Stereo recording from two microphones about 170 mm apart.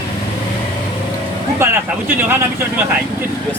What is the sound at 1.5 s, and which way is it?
A man's voice, 15° right (ahead or behind).